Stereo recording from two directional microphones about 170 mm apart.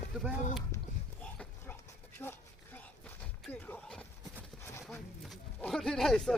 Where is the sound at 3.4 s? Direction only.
10° left (ahead or behind).